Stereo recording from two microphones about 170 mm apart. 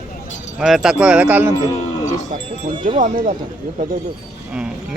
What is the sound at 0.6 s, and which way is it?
Speech, centre (ahead or behind).